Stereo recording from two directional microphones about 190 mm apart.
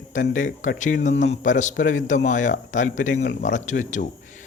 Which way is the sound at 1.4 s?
40° left (ahead or behind).